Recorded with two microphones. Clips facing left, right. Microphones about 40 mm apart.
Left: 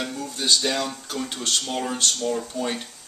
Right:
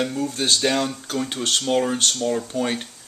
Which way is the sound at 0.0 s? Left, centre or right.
Centre.